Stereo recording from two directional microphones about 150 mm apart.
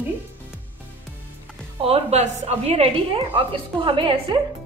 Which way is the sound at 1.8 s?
40° right (ahead or behind).